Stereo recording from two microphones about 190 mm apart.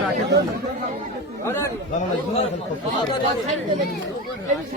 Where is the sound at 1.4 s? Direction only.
15° left (ahead or behind).